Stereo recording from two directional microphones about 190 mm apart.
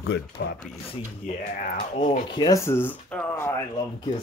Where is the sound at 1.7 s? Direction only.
45° left (ahead or behind).